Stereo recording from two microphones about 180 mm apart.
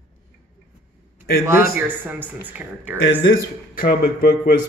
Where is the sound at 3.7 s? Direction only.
50° left (ahead or behind).